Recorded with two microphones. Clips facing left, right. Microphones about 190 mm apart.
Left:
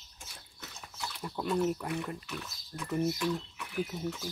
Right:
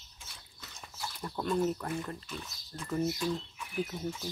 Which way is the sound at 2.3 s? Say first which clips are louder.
Left 1 dB; 70° left (ahead or behind).